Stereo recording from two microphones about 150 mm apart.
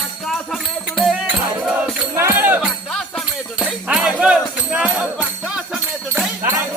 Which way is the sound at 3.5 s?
5° right (ahead or behind).